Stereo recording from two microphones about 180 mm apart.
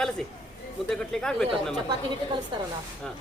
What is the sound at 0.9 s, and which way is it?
Speech, 5° left (ahead or behind).